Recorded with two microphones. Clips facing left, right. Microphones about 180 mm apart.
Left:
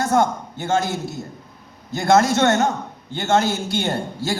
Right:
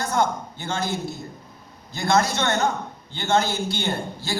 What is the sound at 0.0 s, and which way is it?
A man's voice, 45° left (ahead or behind).